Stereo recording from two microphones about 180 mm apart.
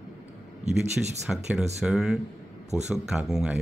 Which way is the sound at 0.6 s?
40° right (ahead or behind).